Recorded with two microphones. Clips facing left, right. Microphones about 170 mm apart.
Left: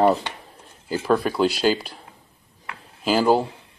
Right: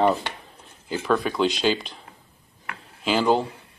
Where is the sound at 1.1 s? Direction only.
5° left (ahead or behind).